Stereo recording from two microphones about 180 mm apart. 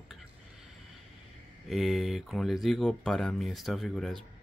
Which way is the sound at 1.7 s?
Centre (ahead or behind).